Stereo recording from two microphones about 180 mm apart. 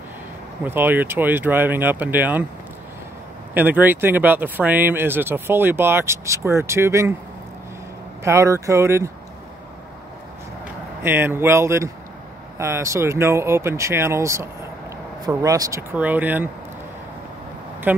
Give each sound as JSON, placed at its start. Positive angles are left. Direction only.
{"t": 0.7, "sound": "speech", "side_deg": -10}
{"t": 3.5, "sound": "speech", "side_deg": -10}
{"t": 8.2, "sound": "speech", "side_deg": -15}
{"t": 11.0, "sound": "speech", "side_deg": -15}
{"t": 17.9, "sound": "speech", "side_deg": -10}